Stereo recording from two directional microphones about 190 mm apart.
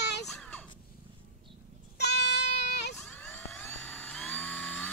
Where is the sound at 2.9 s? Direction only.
5° left (ahead or behind).